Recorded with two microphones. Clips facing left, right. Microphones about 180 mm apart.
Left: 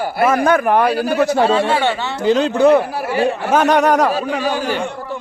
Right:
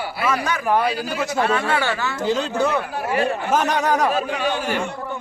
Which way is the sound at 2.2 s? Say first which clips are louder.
Left 8 dB; 65° left (ahead or behind).